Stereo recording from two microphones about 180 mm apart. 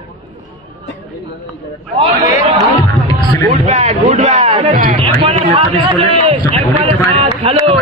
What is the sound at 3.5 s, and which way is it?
A man's voice, 40° right (ahead or behind).